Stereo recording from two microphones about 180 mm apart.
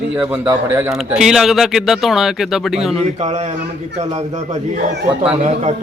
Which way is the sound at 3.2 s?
40° right (ahead or behind).